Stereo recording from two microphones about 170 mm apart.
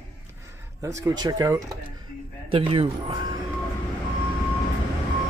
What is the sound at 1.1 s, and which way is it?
Speech, 20° right (ahead or behind).